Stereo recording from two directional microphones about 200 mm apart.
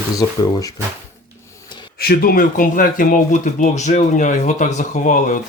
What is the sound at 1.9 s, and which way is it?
Speech, 50° left (ahead or behind).